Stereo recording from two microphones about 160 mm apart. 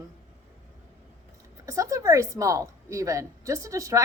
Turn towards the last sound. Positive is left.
turn(degrees=-20)  # may be behind; listen again after turning